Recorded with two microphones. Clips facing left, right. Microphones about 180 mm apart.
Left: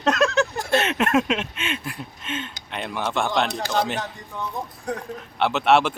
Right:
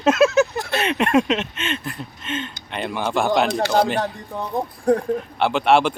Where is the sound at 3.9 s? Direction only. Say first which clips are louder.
Right 7 dB; 60° right (ahead or behind).